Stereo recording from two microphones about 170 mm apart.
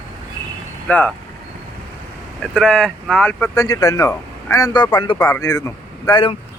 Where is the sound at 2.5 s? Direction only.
5° left (ahead or behind).